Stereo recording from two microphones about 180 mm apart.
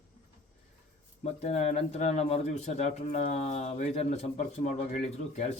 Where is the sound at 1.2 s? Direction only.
35° left (ahead or behind).